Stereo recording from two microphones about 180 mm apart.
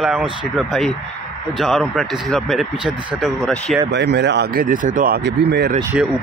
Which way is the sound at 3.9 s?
70° right (ahead or behind).